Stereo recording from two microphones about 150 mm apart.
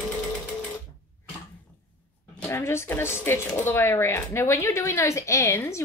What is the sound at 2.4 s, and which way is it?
Speech, 15° left (ahead or behind).